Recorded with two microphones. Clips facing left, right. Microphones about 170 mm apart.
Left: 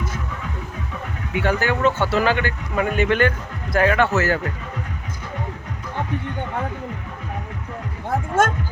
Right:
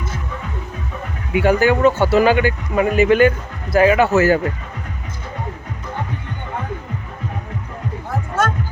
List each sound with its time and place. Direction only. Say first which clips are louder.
1.3 s speech: right 7 dB; 10° right (ahead or behind)
8.4 s music: even; 50° left (ahead or behind)